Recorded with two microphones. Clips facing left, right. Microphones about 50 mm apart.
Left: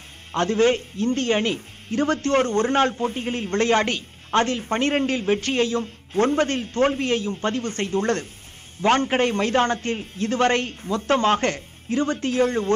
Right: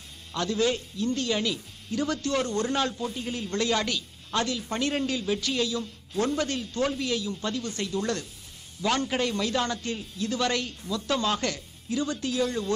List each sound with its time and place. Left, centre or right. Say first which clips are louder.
0.3 s a man's voice: left 7 dB; left